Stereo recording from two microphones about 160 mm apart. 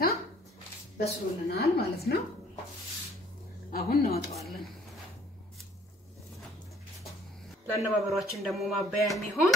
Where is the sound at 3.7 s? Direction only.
70° left (ahead or behind).